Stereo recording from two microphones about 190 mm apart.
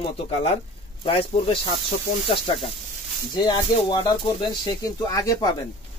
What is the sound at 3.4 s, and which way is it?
Speech, 25° left (ahead or behind).